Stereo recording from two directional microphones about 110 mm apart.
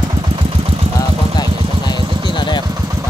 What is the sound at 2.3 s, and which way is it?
Vehicle, 45° left (ahead or behind).